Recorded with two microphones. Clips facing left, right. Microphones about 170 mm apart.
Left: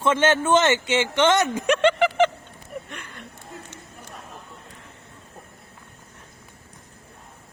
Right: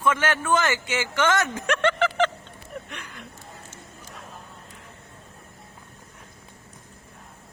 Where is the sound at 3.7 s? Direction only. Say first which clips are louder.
Left 2 dB; 60° left (ahead or behind).